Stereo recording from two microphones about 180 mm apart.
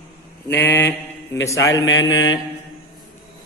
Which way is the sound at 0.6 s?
75° left (ahead or behind).